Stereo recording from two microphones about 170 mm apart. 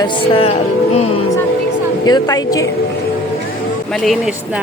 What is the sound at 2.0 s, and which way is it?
Speech, 25° left (ahead or behind).